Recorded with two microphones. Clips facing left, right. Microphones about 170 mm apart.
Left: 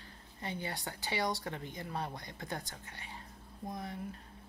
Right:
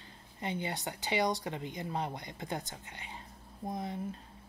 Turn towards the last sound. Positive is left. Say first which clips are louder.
# right 4 dB
turn(degrees=-20)  # may be behind; listen again after turning